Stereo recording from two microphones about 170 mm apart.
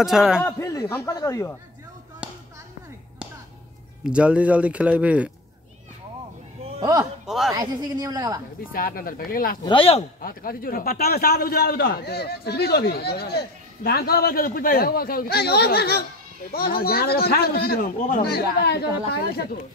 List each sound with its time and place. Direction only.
0.0 s a man's voice: centre (ahead or behind)
0.4 s speech: 15° left (ahead or behind)
4.0 s speech: 5° right (ahead or behind)
6.8 s a man's voice: 20° right (ahead or behind)
7.2 s a woman's voice: centre (ahead or behind)
7.5 s a woman's voice: 20° right (ahead or behind)
8.7 s a man's voice: 60° left (ahead or behind)
9.7 s speech: 35° left (ahead or behind)
10.2 s a man's voice: 60° left (ahead or behind)